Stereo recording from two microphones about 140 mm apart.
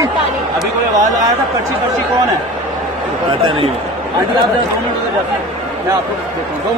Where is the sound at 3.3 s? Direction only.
40° right (ahead or behind).